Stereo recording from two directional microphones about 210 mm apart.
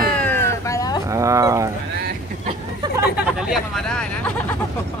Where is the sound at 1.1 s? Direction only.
15° right (ahead or behind).